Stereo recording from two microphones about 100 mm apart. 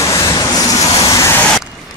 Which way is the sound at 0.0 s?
30° left (ahead or behind).